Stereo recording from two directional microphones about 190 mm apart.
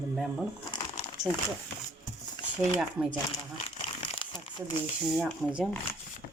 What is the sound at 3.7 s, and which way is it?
Crumpling, 30° left (ahead or behind).